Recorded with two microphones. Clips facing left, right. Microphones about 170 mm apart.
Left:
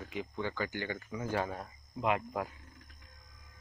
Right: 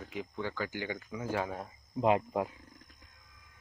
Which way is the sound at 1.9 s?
30° right (ahead or behind).